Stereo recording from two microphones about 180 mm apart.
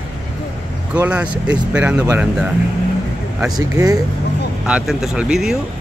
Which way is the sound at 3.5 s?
20° right (ahead or behind).